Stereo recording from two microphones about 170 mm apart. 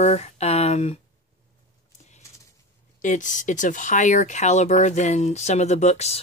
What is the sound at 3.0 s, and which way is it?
Speech, 45° left (ahead or behind).